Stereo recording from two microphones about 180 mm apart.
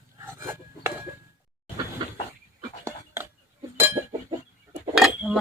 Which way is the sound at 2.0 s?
25° right (ahead or behind).